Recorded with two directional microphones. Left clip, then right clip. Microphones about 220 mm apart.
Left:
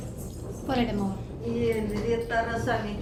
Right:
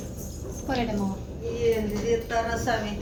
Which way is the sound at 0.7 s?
10° left (ahead or behind).